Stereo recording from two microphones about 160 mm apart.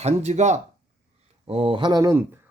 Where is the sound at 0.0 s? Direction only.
45° right (ahead or behind).